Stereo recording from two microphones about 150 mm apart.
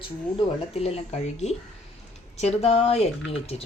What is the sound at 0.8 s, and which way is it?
Speech, 45° left (ahead or behind).